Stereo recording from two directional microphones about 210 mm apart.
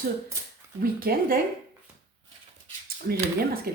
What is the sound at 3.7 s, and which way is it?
Speech, 45° right (ahead or behind).